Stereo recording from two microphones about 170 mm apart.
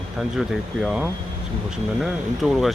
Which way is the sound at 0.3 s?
Centre (ahead or behind).